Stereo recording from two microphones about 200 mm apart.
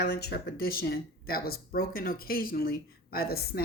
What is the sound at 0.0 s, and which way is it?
Speech, 55° left (ahead or behind).